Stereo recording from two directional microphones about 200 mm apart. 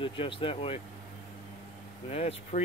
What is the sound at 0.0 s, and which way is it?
Speech, 25° left (ahead or behind).